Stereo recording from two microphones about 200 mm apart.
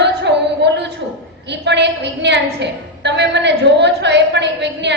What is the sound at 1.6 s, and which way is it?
A woman's voice, 60° right (ahead or behind).